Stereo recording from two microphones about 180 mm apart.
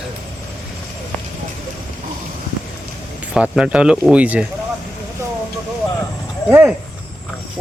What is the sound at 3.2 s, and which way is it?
Speech, 5° right (ahead or behind).